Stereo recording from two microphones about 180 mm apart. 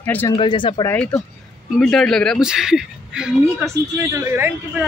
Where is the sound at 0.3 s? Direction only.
25° left (ahead or behind).